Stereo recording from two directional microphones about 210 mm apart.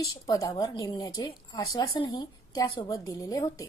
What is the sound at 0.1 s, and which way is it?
A woman's voice, 20° left (ahead or behind).